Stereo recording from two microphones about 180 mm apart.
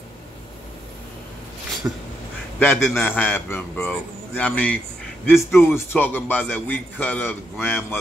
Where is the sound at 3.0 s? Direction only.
10° left (ahead or behind).